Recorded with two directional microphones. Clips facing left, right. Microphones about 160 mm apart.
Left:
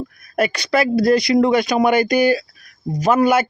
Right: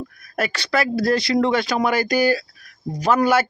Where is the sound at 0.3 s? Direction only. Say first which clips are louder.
Left 4 dB; 20° left (ahead or behind).